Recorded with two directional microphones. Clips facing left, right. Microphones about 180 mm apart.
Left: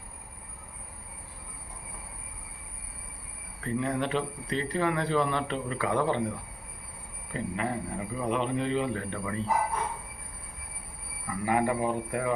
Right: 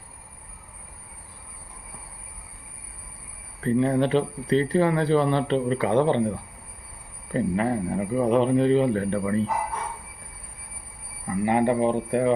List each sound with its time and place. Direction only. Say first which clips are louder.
3.6 s speech: right 8 dB; 30° right (ahead or behind)
7.3 s speech: right 8 dB; 40° right (ahead or behind)
11.3 s speech: right 5 dB; 25° right (ahead or behind)